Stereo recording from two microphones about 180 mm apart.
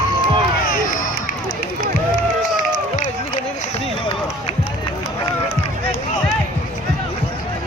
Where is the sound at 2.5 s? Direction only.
45° left (ahead or behind).